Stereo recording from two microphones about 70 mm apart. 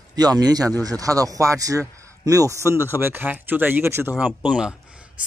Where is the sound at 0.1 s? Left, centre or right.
Right.